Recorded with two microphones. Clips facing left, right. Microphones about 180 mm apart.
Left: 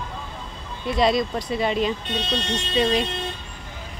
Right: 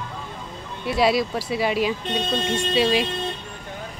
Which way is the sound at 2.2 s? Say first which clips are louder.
Right 3 dB; 50° right (ahead or behind).